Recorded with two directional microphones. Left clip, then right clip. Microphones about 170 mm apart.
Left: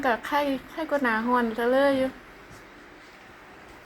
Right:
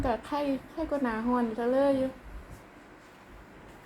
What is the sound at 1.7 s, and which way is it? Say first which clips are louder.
Speech: left 4 dB; 10° left (ahead or behind).